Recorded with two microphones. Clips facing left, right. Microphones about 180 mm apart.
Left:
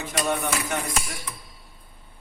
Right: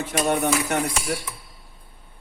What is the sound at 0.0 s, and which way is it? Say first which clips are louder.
Speech: right 4 dB; 60° right (ahead or behind).